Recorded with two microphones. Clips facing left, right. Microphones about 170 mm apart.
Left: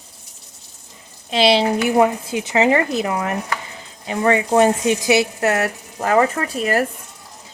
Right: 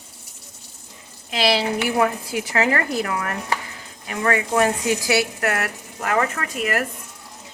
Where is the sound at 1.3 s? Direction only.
25° left (ahead or behind).